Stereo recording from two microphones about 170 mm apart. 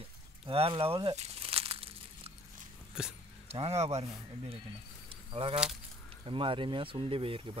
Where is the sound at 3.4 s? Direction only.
35° right (ahead or behind).